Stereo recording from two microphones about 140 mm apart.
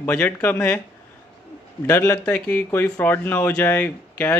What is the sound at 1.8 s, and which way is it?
Speech, 20° left (ahead or behind).